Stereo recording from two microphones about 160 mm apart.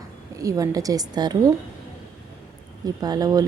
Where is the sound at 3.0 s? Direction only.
25° right (ahead or behind).